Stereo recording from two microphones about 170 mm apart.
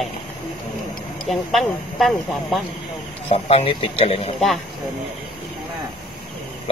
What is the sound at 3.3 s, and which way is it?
Speech, 35° left (ahead or behind).